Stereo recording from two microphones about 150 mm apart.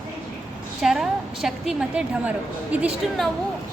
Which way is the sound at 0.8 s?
Centre (ahead or behind).